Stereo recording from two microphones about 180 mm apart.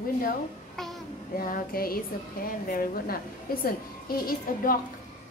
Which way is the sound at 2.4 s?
55° left (ahead or behind).